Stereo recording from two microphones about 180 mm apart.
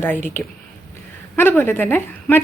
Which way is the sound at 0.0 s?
10° left (ahead or behind).